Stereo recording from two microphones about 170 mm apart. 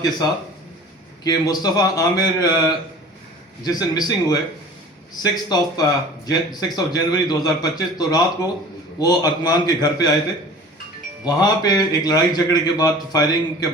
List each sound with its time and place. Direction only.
1.2 s a man's voice: 20° left (ahead or behind)
11.3 s a man's voice: 25° left (ahead or behind)